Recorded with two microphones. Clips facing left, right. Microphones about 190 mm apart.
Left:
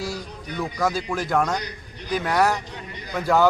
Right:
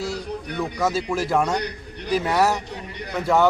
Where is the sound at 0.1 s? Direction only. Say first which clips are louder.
Right 4 dB; 65° right (ahead or behind).